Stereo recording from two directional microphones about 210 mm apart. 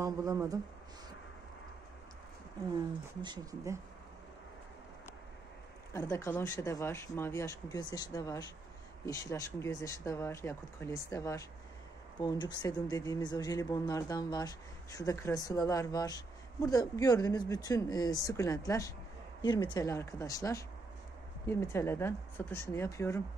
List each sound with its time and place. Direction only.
0.0 s speech: 15° right (ahead or behind)
3.2 s speech: 15° right (ahead or behind)
5.9 s speech: 15° left (ahead or behind)